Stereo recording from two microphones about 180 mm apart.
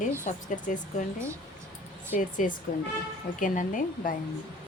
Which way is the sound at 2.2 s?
45° left (ahead or behind).